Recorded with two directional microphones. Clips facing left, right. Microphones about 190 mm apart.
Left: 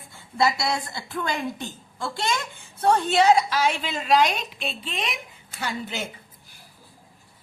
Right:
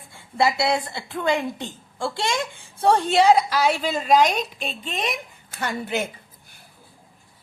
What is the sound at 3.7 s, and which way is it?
A woman's voice, 40° right (ahead or behind).